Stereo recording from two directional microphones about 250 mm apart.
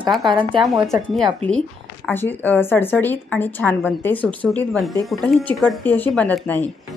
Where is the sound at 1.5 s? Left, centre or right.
Centre.